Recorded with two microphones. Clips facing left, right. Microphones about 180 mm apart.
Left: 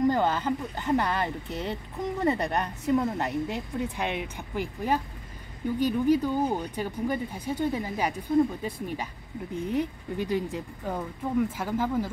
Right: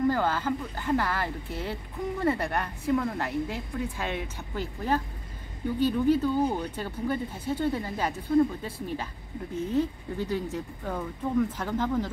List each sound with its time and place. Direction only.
0.0 s speech: 20° left (ahead or behind)